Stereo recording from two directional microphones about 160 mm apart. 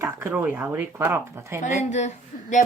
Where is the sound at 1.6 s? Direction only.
45° left (ahead or behind).